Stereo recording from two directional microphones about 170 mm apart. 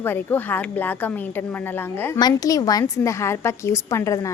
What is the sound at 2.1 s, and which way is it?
A woman's voice, 20° left (ahead or behind).